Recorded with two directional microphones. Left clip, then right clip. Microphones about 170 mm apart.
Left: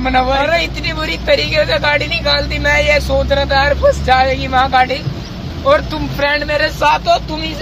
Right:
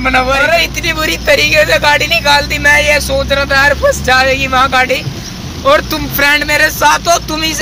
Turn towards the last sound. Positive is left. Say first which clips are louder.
# right 3 dB
turn(degrees=-20)  # may be behind; listen again after turning